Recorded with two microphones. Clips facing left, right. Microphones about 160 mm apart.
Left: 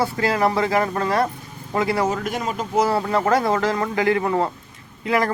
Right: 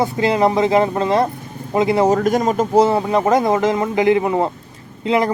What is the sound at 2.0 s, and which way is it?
Speech, 40° right (ahead or behind).